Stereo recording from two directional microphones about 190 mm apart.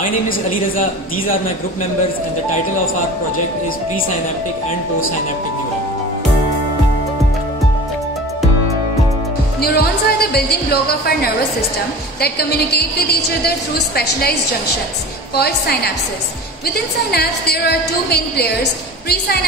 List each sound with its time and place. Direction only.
0.0 s a woman's voice: 45° left (ahead or behind)
9.6 s a woman's voice: 55° left (ahead or behind)
15.3 s a woman's voice: 55° left (ahead or behind)